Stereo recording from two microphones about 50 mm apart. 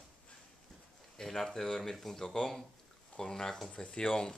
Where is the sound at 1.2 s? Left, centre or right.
Centre.